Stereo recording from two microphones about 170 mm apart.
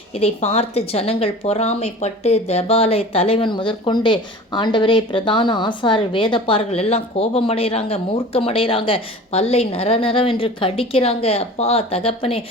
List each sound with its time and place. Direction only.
0.1 s a woman's voice: 35° left (ahead or behind)